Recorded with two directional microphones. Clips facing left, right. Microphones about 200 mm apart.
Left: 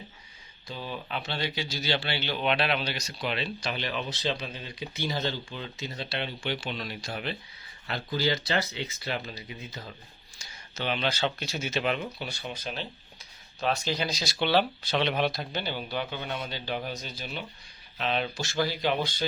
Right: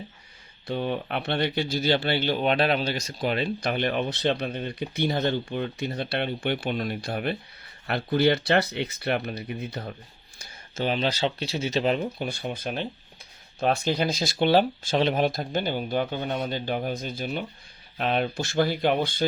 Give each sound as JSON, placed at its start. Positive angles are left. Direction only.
{"t": 0.7, "sound": "speech", "side_deg": -60}
{"t": 10.3, "sound": "speech", "side_deg": -45}
{"t": 12.3, "sound": "speech", "side_deg": -55}